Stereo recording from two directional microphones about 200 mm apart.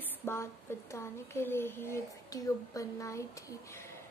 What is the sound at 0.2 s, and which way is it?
A woman's voice, 10° left (ahead or behind).